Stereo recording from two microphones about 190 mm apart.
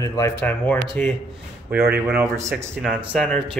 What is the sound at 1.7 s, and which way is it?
Speech, 55° right (ahead or behind).